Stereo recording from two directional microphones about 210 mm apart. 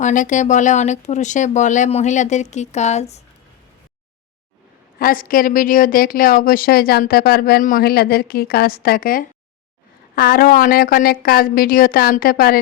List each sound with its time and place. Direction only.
0.0 s speech: 35° left (ahead or behind)
4.9 s a woman's voice: 45° left (ahead or behind)